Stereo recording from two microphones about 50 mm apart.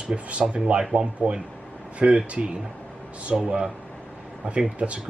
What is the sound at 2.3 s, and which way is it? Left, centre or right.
Speech, right.